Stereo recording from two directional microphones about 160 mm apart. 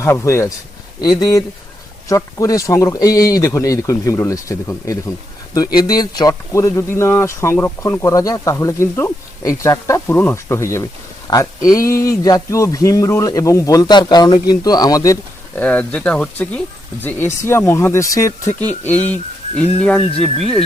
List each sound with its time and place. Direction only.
0.0 s speech: 15° left (ahead or behind)
15.5 s speech: 10° left (ahead or behind)
20.0 s speech: 35° left (ahead or behind)